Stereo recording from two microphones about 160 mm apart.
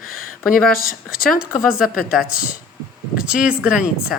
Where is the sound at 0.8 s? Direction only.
65° left (ahead or behind).